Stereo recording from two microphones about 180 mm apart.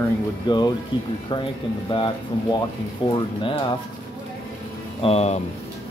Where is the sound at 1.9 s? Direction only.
30° left (ahead or behind).